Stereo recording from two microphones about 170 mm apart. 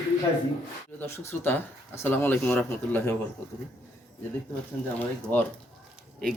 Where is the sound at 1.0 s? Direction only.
10° left (ahead or behind).